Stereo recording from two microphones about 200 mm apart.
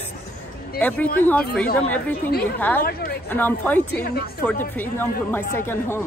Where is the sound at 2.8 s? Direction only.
50° left (ahead or behind).